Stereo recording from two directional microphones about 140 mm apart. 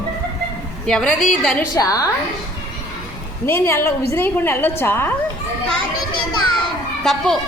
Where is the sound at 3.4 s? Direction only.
15° left (ahead or behind).